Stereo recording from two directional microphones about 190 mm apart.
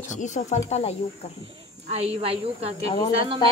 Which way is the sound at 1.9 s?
35° right (ahead or behind).